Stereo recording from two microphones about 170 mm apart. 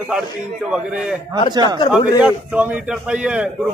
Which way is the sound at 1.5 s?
25° right (ahead or behind).